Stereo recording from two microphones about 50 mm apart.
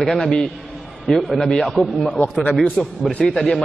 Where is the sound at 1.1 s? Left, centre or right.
Centre.